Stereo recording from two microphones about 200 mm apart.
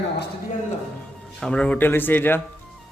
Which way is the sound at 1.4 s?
5° left (ahead or behind).